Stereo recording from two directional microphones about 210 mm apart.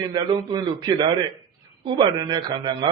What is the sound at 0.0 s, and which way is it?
A man's voice, 20° right (ahead or behind).